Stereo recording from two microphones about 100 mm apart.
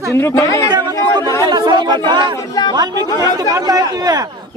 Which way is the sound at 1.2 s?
25° left (ahead or behind).